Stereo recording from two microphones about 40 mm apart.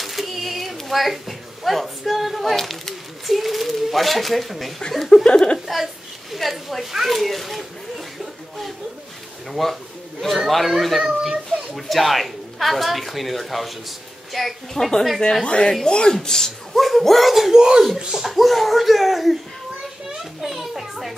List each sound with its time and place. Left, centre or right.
0.0 s a sound: centre
2.5 s speech: centre
5.1 s speech: centre
6.3 s a woman's voice: centre
6.8 s speech: centre
7.1 s a woman's voice: centre
9.5 s a woman's voice: centre
15.4 s a woman's voice: left
16.7 s a woman's voice: centre
17.5 s speech: centre
18.2 s a woman's voice: centre
20.4 s a child's voice: centre